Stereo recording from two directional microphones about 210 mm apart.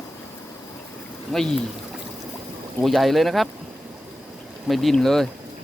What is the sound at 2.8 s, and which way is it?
Speech, centre (ahead or behind).